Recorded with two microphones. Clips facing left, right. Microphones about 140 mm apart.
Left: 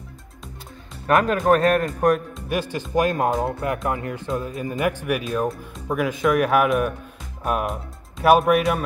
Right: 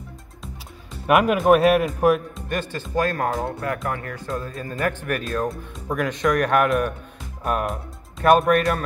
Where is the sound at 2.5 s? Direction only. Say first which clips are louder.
Left 2 dB; 15° left (ahead or behind).